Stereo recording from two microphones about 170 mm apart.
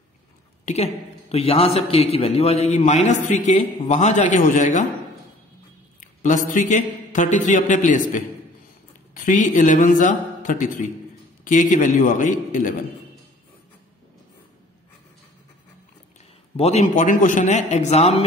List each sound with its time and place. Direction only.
0.7 s a man's voice: 40° left (ahead or behind)
5.9 s a man's voice: 50° left (ahead or behind)
16.5 s speech: 40° left (ahead or behind)